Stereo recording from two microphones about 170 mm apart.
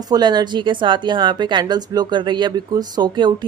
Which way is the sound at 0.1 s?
25° right (ahead or behind).